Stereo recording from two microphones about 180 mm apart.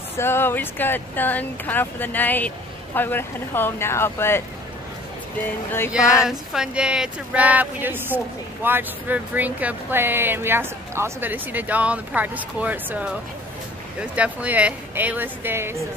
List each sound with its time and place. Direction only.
0.2 s speech: 10° left (ahead or behind)
6.2 s speech: 5° right (ahead or behind)
14.1 s speech: 5° right (ahead or behind)